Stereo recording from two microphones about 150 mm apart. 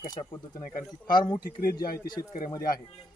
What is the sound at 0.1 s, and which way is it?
Speech, 30° left (ahead or behind).